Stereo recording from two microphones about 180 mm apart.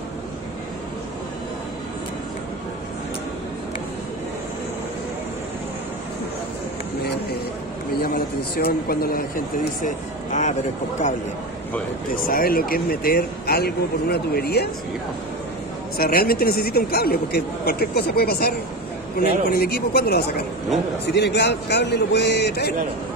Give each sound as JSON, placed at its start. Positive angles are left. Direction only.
{"t": 8.0, "sound": "a sound", "side_deg": 60}
{"t": 9.8, "sound": "speech", "side_deg": 45}
{"t": 12.3, "sound": "speech", "side_deg": 55}
{"t": 16.0, "sound": "speech", "side_deg": 55}